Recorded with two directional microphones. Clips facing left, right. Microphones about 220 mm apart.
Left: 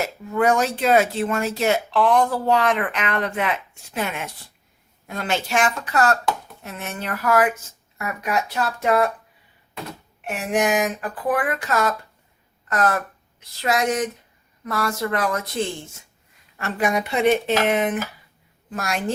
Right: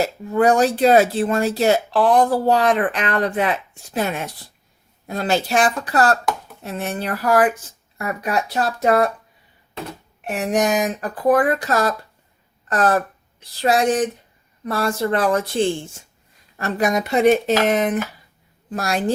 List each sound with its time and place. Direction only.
0.0 s speech: 35° right (ahead or behind)
10.2 s speech: 40° right (ahead or behind)